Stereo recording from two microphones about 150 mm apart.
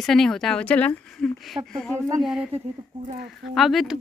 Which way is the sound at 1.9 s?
20° right (ahead or behind).